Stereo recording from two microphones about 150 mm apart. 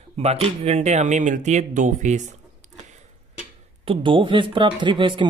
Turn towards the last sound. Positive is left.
turn(degrees=-35)  # may be behind; listen again after turning